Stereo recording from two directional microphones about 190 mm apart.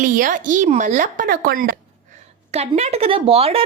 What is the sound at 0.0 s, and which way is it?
A woman's voice, 45° right (ahead or behind).